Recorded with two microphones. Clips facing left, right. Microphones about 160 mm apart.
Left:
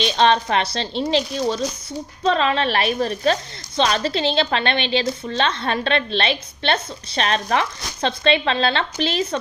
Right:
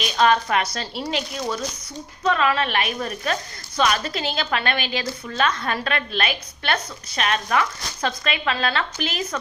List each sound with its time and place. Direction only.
0.0 s a woman's voice: 30° left (ahead or behind)